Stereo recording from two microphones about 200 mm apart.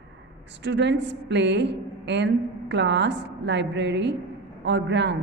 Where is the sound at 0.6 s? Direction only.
60° right (ahead or behind).